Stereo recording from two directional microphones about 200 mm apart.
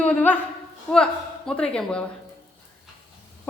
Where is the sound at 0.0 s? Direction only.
5° left (ahead or behind).